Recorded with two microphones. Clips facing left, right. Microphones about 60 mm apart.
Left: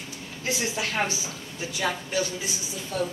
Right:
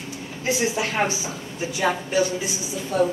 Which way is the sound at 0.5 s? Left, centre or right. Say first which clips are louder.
Right 5 dB; right.